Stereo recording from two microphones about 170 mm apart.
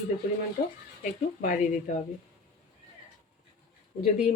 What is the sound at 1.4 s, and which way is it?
Speech, 50° left (ahead or behind).